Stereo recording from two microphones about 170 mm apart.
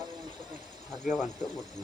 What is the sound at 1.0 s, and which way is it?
Speech, centre (ahead or behind).